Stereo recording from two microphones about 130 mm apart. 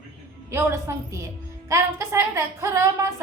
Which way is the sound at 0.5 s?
20° right (ahead or behind).